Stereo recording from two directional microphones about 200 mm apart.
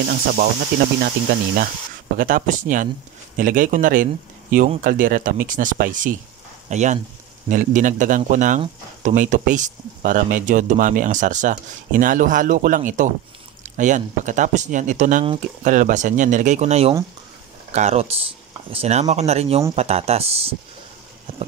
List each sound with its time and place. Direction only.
0.1 s speech: 45° right (ahead or behind); by 20.5 s 30° right (ahead or behind)